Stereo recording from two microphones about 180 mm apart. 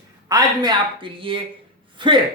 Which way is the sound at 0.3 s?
20° right (ahead or behind).